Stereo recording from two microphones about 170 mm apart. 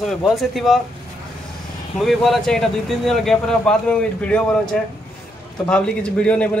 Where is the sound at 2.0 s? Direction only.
Centre (ahead or behind).